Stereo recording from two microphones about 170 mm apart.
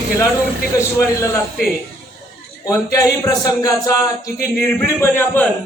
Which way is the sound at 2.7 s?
20° left (ahead or behind).